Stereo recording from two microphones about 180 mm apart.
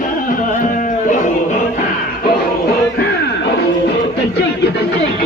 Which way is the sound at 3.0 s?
65° left (ahead or behind).